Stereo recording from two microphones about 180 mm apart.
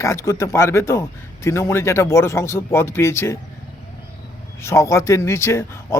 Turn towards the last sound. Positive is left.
turn(degrees=15)  # may be behind; listen again after turning